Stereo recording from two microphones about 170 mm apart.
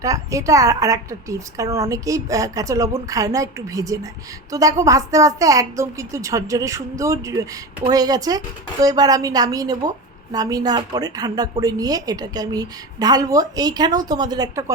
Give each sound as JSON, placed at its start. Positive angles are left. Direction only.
{"t": 0.0, "sound": "a woman's voice", "side_deg": -20}